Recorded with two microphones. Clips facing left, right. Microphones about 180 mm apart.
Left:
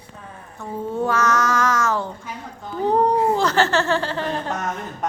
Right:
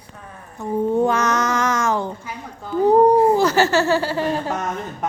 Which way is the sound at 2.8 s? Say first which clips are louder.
Right 5 dB; 10° right (ahead or behind).